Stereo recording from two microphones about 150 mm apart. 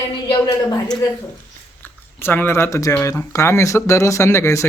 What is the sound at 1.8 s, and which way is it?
Speech, 15° left (ahead or behind).